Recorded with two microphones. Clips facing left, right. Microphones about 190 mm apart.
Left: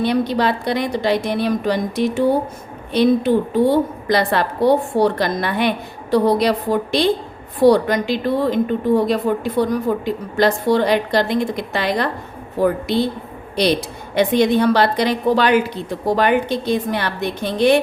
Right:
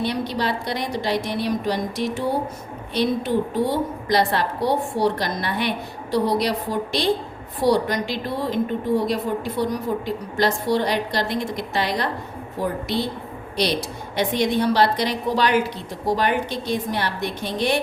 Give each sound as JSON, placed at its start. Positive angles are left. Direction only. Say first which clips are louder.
{"t": 0.0, "sound": "a woman's voice", "louder": "left 6 dB", "side_deg": 55}
{"t": 14.2, "sound": "a woman's voice", "louder": "left 6 dB", "side_deg": 55}